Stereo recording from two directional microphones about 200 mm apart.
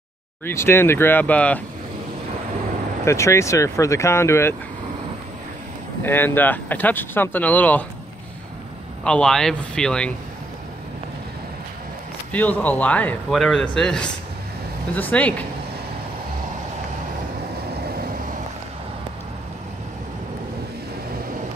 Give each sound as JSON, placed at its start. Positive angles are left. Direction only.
{"t": 0.5, "sound": "a man's voice", "side_deg": 10}
{"t": 3.1, "sound": "a man's voice", "side_deg": 15}
{"t": 6.0, "sound": "a man's voice", "side_deg": 10}
{"t": 9.0, "sound": "speech", "side_deg": 5}
{"t": 12.3, "sound": "a man's voice", "side_deg": 10}
{"t": 17.8, "sound": "vehicle", "side_deg": -50}